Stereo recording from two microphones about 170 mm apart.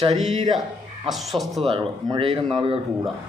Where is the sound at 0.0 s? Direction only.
40° right (ahead or behind).